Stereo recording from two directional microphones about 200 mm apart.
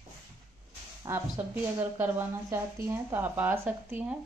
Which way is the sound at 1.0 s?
10° right (ahead or behind).